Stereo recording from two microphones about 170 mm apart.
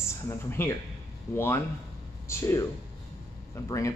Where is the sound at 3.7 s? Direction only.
20° left (ahead or behind).